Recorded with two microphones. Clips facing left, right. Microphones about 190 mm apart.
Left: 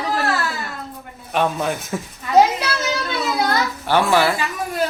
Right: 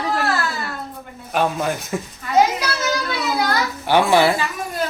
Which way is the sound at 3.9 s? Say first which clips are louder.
Right 2 dB; 20° right (ahead or behind).